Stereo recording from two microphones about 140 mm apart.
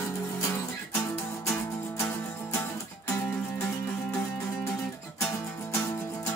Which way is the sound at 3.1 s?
20° left (ahead or behind).